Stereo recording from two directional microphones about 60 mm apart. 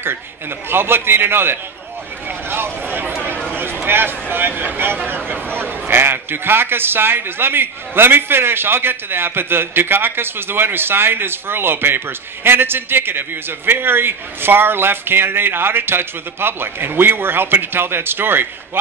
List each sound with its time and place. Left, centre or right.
0.7 s a man's voice: right
2.5 s a sound: right
3.8 s a man's voice: right